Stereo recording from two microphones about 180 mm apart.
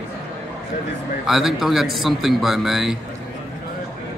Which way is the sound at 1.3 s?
Centre (ahead or behind).